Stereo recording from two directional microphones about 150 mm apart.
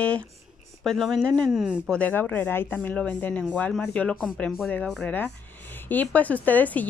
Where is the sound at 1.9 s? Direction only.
10° left (ahead or behind).